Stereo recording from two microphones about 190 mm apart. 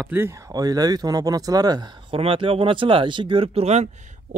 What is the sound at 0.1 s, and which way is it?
Speech, 15° right (ahead or behind).